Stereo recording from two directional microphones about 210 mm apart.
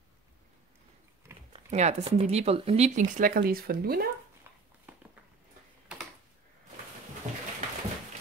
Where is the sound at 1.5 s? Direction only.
30° right (ahead or behind); by 4.0 s 45° right (ahead or behind).